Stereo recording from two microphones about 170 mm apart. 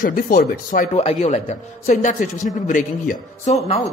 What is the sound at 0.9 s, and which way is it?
Speech, 40° left (ahead or behind).